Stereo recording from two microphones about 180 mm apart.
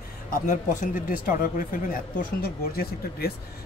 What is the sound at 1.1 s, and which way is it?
Speech, 50° left (ahead or behind).